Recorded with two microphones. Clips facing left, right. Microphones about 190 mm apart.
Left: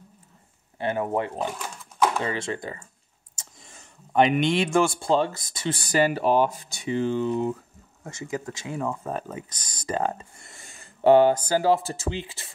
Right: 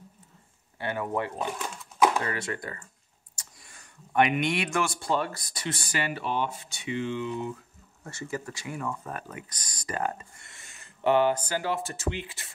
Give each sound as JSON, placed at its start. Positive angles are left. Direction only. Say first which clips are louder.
{"t": 0.7, "sound": "speech", "louder": "left 4 dB", "side_deg": 25}
{"t": 5.8, "sound": "speech", "louder": "left 12 dB", "side_deg": 35}
{"t": 8.5, "sound": "speech", "louder": "left 5 dB", "side_deg": 20}